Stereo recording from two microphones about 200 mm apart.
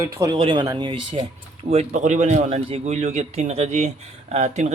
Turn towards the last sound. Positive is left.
turn(degrees=-35)  # may be behind; listen again after turning